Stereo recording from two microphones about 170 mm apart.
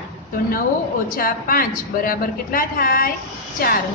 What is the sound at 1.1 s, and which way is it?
A woman's voice, 55° left (ahead or behind).